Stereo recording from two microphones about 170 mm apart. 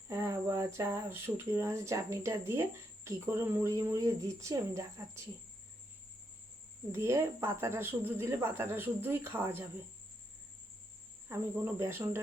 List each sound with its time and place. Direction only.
0.1 s speech: 15° right (ahead or behind)
6.9 s speech: 15° right (ahead or behind)
11.3 s speech: 15° right (ahead or behind)